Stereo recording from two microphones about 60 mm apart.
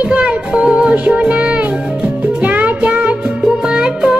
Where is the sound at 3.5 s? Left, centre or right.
Centre.